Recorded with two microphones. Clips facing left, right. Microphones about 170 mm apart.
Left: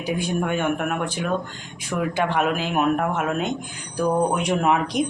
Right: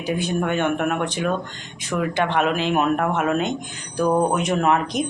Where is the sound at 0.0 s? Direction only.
10° left (ahead or behind).